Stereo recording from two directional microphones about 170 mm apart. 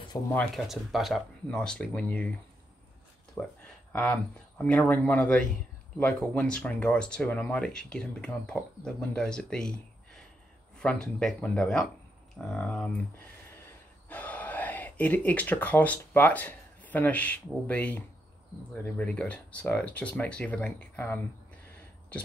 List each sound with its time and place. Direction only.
0.1 s speech: 15° left (ahead or behind)
0.6 s speech: centre (ahead or behind)
3.4 s speech: 10° left (ahead or behind)
10.8 s speech: 5° left (ahead or behind)
14.0 s speech: 10° left (ahead or behind)